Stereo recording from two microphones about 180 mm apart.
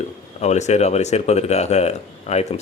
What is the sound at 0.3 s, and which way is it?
Speech, 40° left (ahead or behind).